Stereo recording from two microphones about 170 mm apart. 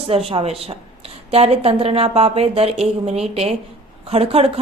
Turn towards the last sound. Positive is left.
turn(degrees=-35)  # may be behind; listen again after turning